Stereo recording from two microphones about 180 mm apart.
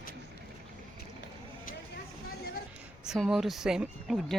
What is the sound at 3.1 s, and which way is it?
Speech, centre (ahead or behind).